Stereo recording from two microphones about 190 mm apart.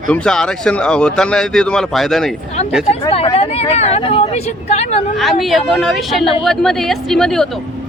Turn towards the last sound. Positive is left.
turn(degrees=0)  # may be behind; listen again after turning